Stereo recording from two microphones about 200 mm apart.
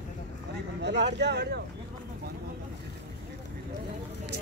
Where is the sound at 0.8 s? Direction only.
60° right (ahead or behind).